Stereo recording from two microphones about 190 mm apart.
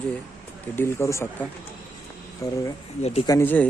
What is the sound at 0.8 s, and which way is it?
Speech, 15° left (ahead or behind).